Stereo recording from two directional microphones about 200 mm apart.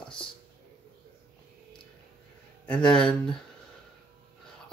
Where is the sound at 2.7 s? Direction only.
5° left (ahead or behind).